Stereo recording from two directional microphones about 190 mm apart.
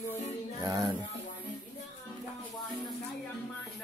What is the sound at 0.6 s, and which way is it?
Music, 20° right (ahead or behind).